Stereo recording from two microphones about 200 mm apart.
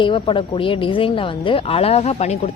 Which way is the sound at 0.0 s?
25° left (ahead or behind).